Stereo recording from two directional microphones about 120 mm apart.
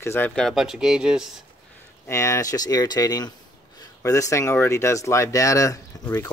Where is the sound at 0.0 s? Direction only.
20° left (ahead or behind).